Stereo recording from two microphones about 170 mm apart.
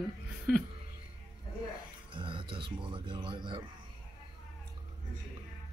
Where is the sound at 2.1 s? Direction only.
30° right (ahead or behind).